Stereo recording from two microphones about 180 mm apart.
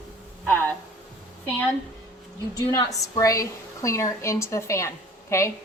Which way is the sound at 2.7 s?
20° left (ahead or behind).